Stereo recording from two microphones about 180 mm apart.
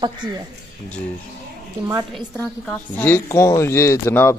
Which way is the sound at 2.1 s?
5° left (ahead or behind).